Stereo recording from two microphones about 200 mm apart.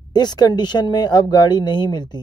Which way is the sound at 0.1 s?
20° left (ahead or behind).